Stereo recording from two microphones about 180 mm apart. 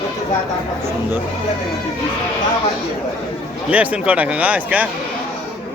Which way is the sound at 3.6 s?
10° right (ahead or behind).